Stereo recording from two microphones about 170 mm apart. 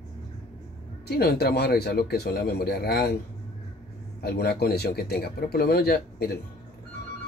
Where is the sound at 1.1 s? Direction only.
70° left (ahead or behind).